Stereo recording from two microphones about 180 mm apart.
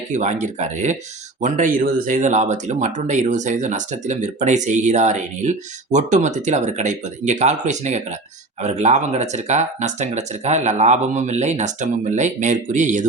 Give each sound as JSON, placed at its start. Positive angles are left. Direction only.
{"t": 0.1, "sound": "speech", "side_deg": -40}